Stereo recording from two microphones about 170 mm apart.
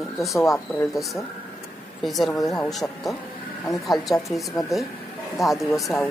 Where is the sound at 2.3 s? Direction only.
20° left (ahead or behind).